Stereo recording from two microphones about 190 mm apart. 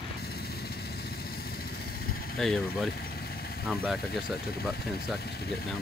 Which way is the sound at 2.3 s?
5° left (ahead or behind).